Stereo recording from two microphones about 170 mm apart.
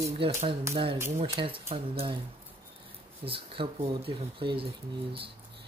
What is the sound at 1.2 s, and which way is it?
Speech, 30° right (ahead or behind).